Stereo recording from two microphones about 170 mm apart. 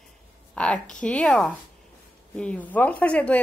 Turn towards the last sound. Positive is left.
turn(degrees=5)  # may be behind; listen again after turning